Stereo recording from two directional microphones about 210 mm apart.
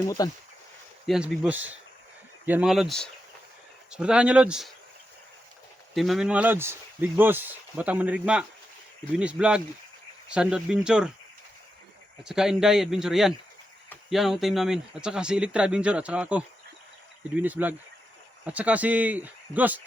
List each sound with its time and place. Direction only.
0.2 s speech: 20° left (ahead or behind)
1.0 s speech: centre (ahead or behind)
5.9 s speech: centre (ahead or behind)
12.2 s speech: centre (ahead or behind)